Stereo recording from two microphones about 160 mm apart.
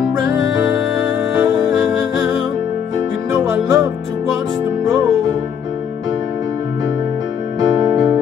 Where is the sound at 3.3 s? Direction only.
15° right (ahead or behind).